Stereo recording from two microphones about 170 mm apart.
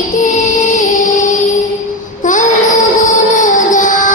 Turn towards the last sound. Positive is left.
turn(degrees=50)  # may be behind; listen again after turning